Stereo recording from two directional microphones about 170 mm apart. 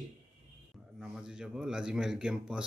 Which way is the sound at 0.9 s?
5° right (ahead or behind).